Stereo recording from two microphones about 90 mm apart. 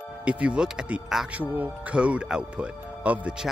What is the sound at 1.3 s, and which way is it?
Speech, 15° right (ahead or behind).